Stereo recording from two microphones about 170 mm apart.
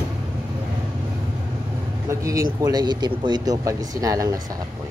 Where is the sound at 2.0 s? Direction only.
20° right (ahead or behind).